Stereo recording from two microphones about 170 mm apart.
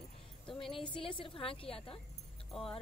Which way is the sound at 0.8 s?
30° left (ahead or behind).